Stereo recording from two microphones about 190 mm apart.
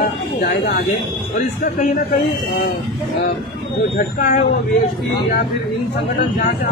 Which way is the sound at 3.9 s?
45° left (ahead or behind).